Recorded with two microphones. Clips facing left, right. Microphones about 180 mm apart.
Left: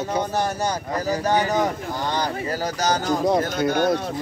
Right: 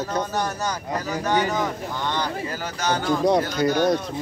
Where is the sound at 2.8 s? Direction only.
40° left (ahead or behind).